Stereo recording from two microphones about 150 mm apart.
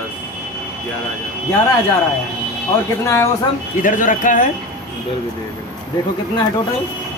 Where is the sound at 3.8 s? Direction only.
60° left (ahead or behind).